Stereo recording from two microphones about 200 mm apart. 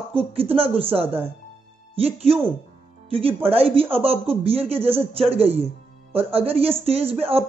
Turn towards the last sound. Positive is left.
turn(degrees=-30)  # may be behind; listen again after turning